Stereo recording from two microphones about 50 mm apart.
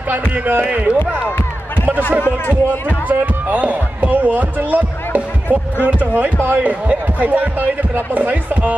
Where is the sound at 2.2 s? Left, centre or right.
Left.